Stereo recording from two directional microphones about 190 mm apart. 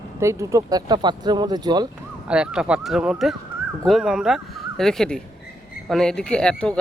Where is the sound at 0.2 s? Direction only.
15° right (ahead or behind).